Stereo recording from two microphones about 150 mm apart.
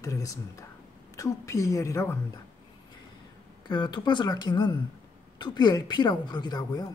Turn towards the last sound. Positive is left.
turn(degrees=25)  # may be behind; listen again after turning